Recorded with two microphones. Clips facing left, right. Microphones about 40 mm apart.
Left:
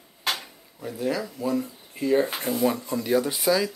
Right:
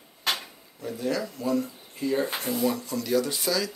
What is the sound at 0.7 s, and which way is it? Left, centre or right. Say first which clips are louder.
Speech: left 1 dB; centre.